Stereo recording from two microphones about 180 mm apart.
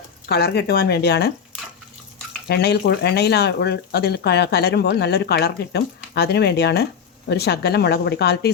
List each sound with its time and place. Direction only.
0.3 s speech: 65° left (ahead or behind)
2.5 s speech: 65° left (ahead or behind)